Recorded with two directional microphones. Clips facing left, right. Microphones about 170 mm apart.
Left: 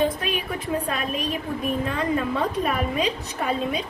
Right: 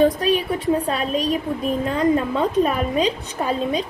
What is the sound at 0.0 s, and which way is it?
A woman's voice, 35° right (ahead or behind).